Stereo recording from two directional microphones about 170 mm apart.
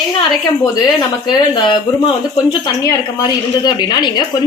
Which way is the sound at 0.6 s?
25° left (ahead or behind).